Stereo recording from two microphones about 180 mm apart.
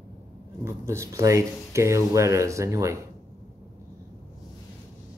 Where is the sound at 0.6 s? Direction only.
15° right (ahead or behind).